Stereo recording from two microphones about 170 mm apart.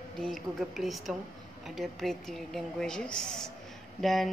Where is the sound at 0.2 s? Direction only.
Centre (ahead or behind).